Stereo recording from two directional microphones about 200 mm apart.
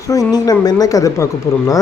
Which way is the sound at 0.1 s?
20° left (ahead or behind).